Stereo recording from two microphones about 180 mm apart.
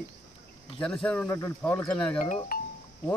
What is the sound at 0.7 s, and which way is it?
Speech, 5° left (ahead or behind).